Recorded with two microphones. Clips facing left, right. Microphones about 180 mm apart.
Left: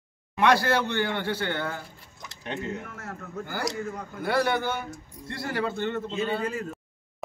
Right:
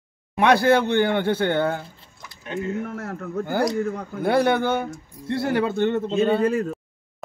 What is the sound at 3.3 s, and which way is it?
A man's voice, 55° right (ahead or behind).